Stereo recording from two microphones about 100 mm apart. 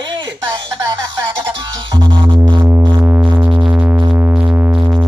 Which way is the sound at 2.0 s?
50° right (ahead or behind).